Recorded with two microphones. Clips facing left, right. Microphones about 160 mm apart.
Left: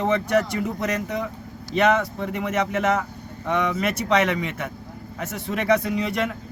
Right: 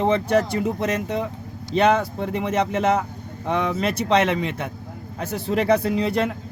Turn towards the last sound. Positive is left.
turn(degrees=-30)  # may be behind; listen again after turning